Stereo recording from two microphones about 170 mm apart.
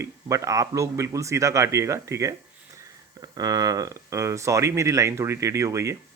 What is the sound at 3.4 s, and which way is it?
Speech, 20° right (ahead or behind).